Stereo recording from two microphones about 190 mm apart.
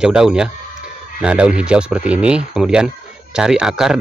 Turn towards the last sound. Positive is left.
turn(degrees=-5)  # may be behind; listen again after turning